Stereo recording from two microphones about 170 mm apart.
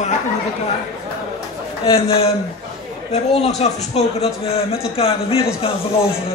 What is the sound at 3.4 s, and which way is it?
A man's voice, 40° left (ahead or behind).